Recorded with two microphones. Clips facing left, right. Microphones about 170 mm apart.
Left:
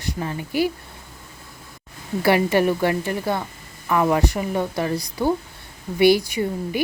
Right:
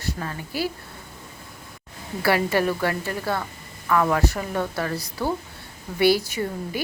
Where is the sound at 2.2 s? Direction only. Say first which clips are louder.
Left 3 dB; 20° left (ahead or behind).